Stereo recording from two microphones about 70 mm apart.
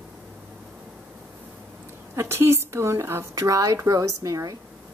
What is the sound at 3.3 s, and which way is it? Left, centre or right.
A woman's voice, right.